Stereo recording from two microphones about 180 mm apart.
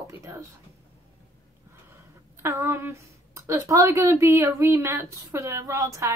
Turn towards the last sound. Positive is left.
turn(degrees=-15)  # may be behind; listen again after turning